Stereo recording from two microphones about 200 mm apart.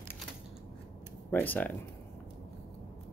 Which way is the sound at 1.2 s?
10° left (ahead or behind).